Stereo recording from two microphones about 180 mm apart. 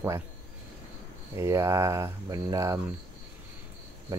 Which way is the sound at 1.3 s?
15° right (ahead or behind).